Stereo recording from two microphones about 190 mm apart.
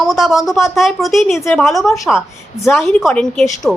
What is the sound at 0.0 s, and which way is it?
A woman's voice, centre (ahead or behind).